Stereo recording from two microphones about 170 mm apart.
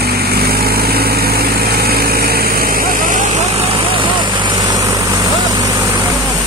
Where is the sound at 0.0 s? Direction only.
65° right (ahead or behind); by 6.0 s 20° right (ahead or behind).